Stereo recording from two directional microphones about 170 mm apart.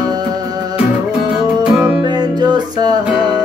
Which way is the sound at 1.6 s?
10° right (ahead or behind).